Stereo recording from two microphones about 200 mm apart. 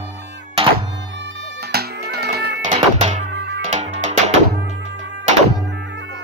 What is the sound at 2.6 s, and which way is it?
Music, 35° right (ahead or behind).